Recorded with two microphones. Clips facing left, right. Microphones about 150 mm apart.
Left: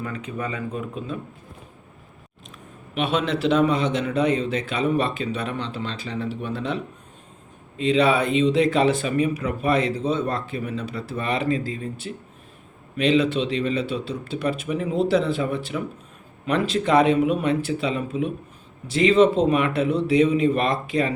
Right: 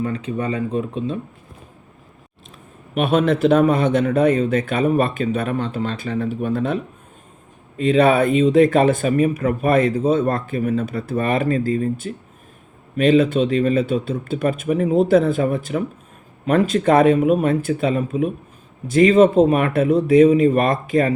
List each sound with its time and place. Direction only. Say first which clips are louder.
0.0 s speech: right 6 dB; 30° right (ahead or behind)
2.9 s speech: right 6 dB; 50° right (ahead or behind)